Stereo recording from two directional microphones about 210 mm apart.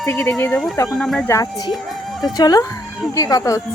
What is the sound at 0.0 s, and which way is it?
Speech, 10° left (ahead or behind).